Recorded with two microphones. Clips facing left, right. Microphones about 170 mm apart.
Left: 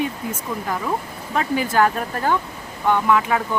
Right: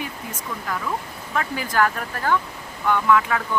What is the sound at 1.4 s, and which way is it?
Speech, 25° left (ahead or behind).